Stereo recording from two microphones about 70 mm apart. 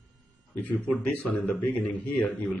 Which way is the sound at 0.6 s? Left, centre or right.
Left.